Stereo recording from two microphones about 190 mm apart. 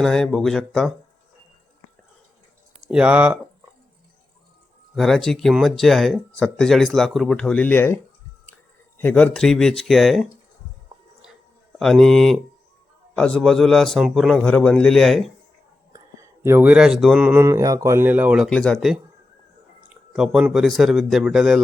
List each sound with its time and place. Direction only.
0.0 s speech: centre (ahead or behind)
2.8 s speech: 5° right (ahead or behind)
4.9 s speech: centre (ahead or behind)
9.0 s speech: 10° left (ahead or behind)
11.8 s speech: centre (ahead or behind)
16.4 s speech: 10° right (ahead or behind)